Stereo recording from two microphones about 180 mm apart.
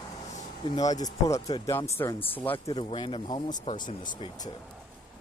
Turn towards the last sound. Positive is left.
turn(degrees=25)  # may be behind; listen again after turning